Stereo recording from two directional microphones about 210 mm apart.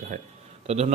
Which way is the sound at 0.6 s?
30° right (ahead or behind).